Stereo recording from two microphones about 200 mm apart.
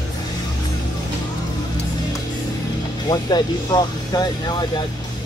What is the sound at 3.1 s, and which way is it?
Speech, 20° left (ahead or behind).